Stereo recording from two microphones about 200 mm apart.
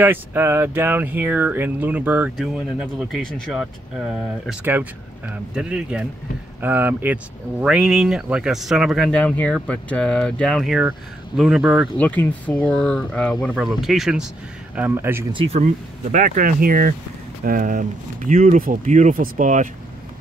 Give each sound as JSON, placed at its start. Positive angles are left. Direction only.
{"t": 0.0, "sound": "speech", "side_deg": -10}
{"t": 4.5, "sound": "speech", "side_deg": -10}
{"t": 15.3, "sound": "speech", "side_deg": -30}